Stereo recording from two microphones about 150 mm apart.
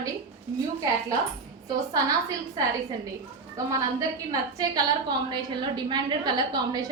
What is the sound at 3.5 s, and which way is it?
A woman's voice, 25° right (ahead or behind).